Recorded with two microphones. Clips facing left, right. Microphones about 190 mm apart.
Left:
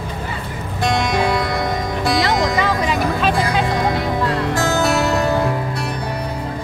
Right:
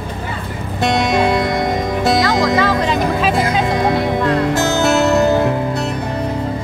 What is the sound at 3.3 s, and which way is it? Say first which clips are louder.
Music: right 2 dB; 25° right (ahead or behind).